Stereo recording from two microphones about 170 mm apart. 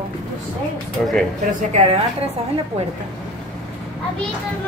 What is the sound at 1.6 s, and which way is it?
Speech, 45° right (ahead or behind).